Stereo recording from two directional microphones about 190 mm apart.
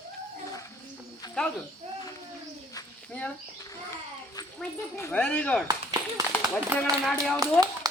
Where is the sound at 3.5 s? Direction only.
20° left (ahead or behind).